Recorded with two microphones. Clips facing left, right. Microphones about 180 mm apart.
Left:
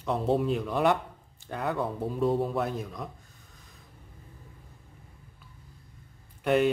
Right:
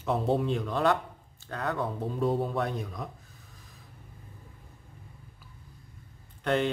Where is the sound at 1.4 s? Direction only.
15° left (ahead or behind).